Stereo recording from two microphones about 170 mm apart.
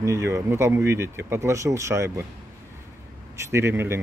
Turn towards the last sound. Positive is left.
turn(degrees=-15)  # may be behind; listen again after turning